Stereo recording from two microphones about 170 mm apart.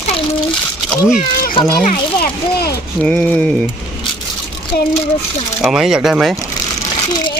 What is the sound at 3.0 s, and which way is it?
Speech, 5° left (ahead or behind).